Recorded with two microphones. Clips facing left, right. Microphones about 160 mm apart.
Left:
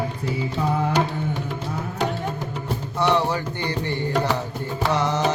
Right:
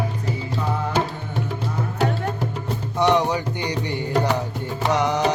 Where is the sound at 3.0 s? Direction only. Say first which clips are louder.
Right 2 dB; 15° right (ahead or behind).